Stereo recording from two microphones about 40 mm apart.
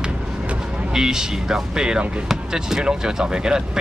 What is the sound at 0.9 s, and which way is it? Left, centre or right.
Speech, centre.